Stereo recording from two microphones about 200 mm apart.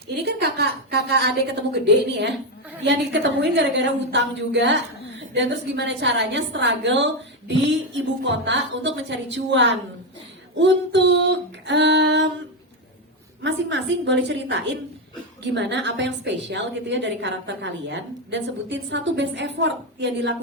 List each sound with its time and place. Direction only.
0.3 s a woman's voice: 55° right (ahead or behind)
13.4 s a woman's voice: 60° right (ahead or behind)